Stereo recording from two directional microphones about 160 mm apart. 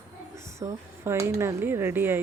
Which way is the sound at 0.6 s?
15° right (ahead or behind).